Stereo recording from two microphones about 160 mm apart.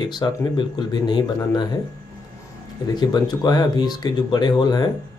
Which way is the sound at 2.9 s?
25° left (ahead or behind).